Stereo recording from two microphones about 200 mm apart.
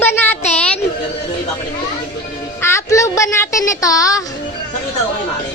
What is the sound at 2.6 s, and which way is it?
Speech, 15° left (ahead or behind).